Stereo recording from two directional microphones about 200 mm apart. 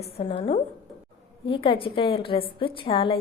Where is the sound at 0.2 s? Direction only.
25° left (ahead or behind).